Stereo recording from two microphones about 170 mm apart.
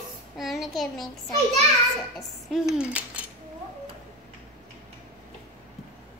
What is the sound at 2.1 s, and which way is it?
Speech, centre (ahead or behind).